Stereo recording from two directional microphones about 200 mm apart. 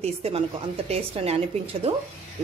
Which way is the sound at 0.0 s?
30° right (ahead or behind).